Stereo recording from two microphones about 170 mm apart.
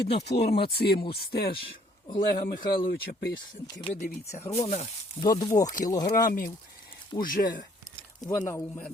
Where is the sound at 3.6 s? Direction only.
20° left (ahead or behind).